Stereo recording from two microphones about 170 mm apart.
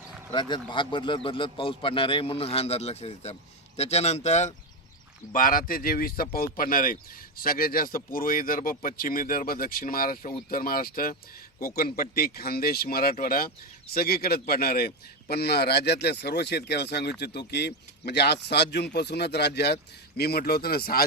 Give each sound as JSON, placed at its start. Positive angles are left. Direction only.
{"t": 0.3, "sound": "a man's voice", "side_deg": 25}
{"t": 5.3, "sound": "a man's voice", "side_deg": 55}